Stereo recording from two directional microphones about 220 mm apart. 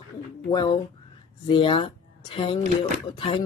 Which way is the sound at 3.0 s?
20° left (ahead or behind).